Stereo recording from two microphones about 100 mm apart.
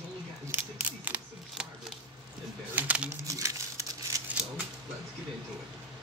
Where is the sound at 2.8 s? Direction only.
15° right (ahead or behind).